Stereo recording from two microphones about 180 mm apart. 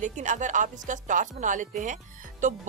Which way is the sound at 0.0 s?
45° right (ahead or behind).